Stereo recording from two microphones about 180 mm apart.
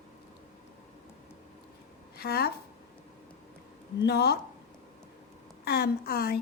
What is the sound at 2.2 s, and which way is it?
Speech, 60° left (ahead or behind).